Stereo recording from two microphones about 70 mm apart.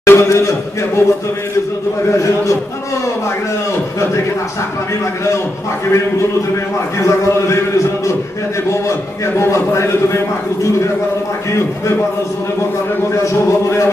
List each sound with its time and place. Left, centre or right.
0.0 s a man's voice: left
7.0 s speech: left
8.6 s a man's voice: left
13.1 s speech: left